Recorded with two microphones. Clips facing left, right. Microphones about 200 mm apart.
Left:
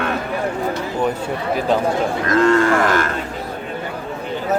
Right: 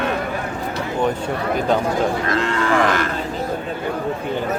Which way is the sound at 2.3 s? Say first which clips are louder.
Left 5 dB; 45° left (ahead or behind).